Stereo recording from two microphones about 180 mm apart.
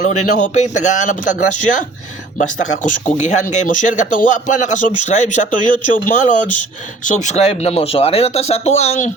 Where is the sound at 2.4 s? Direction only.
45° left (ahead or behind).